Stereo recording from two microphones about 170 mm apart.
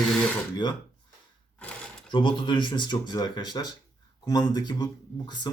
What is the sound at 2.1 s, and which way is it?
Speech, 30° left (ahead or behind).